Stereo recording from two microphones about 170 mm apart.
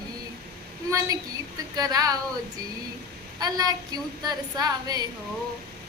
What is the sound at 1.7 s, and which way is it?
Speech, 20° right (ahead or behind).